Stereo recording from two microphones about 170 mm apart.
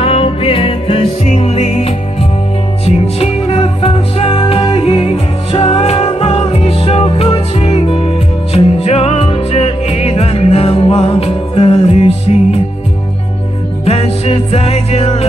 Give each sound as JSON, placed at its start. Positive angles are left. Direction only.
{"t": 0.0, "sound": "music", "side_deg": 35}
{"t": 13.8, "sound": "music", "side_deg": 35}